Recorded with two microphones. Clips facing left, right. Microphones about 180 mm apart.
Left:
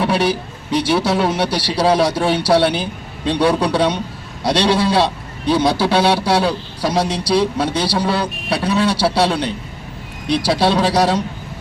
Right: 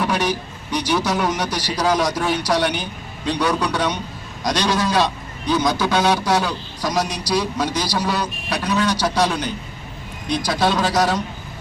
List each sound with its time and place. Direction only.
0.0 s a man's voice: 30° left (ahead or behind)